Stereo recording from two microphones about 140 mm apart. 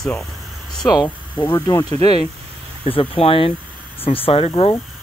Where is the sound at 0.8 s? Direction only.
30° left (ahead or behind).